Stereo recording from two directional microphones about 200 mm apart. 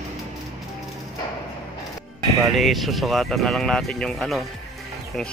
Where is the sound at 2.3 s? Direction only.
Centre (ahead or behind).